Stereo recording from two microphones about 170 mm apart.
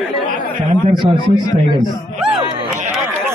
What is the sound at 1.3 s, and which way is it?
Speech, 25° left (ahead or behind).